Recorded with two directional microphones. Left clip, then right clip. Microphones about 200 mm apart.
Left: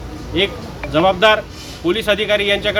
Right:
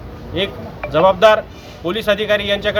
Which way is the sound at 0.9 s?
10° right (ahead or behind).